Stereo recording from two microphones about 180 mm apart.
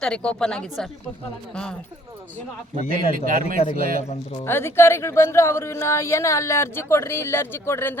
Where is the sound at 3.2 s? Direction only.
50° right (ahead or behind).